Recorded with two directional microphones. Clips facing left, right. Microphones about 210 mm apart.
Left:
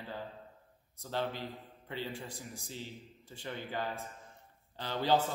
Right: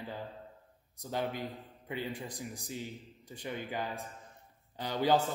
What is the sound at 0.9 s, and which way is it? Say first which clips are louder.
A man's voice: right 1 dB; 15° right (ahead or behind).